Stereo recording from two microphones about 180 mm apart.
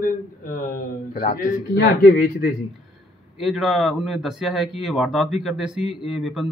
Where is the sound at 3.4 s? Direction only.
Centre (ahead or behind).